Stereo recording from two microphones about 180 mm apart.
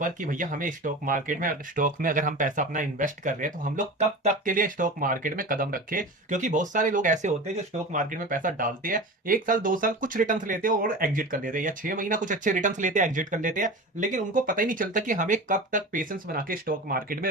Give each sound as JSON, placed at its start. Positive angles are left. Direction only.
{"t": 0.0, "sound": "speech", "side_deg": -50}